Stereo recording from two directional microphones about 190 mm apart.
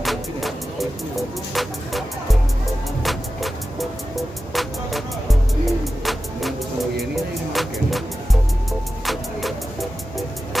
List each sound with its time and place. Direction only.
0.0 s music: centre (ahead or behind)
4.6 s music: centre (ahead or behind)